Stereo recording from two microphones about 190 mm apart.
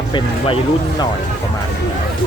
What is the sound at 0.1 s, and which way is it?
Speech, 25° left (ahead or behind).